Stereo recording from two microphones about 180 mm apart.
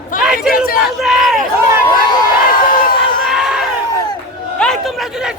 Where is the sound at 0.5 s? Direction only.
55° left (ahead or behind).